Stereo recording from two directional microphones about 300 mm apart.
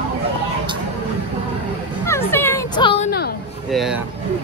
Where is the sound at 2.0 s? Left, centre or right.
Centre.